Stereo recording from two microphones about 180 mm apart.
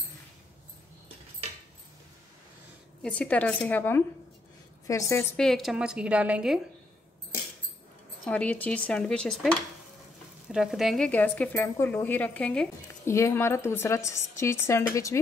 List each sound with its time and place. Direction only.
3.0 s a woman's voice: 5° left (ahead or behind)
5.4 s a woman's voice: centre (ahead or behind)
8.3 s a woman's voice: 5° left (ahead or behind)